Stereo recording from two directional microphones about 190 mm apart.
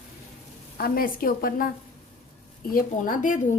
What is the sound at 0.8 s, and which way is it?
A woman's voice, 50° left (ahead or behind).